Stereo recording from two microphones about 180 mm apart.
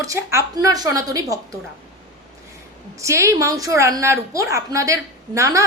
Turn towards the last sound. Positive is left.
turn(degrees=-15)  # may be behind; listen again after turning